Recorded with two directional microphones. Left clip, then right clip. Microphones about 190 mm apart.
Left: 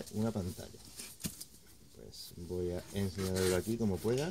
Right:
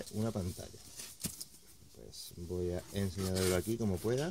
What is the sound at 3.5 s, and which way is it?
Speech, 45° right (ahead or behind).